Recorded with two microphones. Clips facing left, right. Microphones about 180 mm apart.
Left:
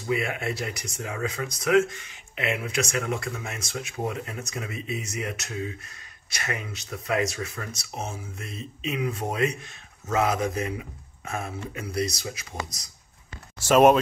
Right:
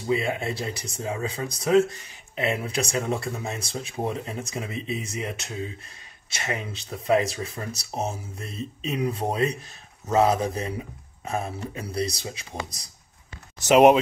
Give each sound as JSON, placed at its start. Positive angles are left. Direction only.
{"t": 0.0, "sound": "speech", "side_deg": -30}
{"t": 13.6, "sound": "speech", "side_deg": -15}